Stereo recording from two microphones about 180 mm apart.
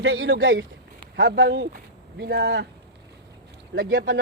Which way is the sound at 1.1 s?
75° right (ahead or behind).